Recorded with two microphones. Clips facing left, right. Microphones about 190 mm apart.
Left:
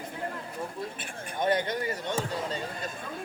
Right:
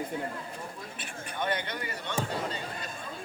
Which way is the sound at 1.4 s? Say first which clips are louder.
Left 6 dB; 40° left (ahead or behind).